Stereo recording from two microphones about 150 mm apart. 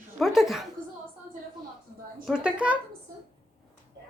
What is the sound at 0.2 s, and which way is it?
Speech, centre (ahead or behind).